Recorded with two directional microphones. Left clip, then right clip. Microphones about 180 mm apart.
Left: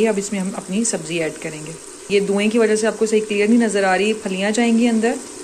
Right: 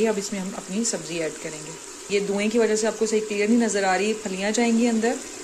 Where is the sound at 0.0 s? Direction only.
Centre (ahead or behind).